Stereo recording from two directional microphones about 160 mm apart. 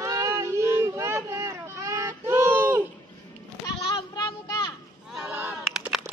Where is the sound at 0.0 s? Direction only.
20° right (ahead or behind).